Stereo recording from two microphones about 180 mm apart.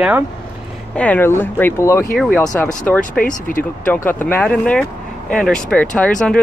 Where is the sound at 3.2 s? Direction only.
50° left (ahead or behind).